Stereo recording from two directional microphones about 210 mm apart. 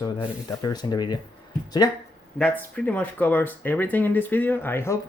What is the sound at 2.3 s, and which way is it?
Speech, 5° left (ahead or behind).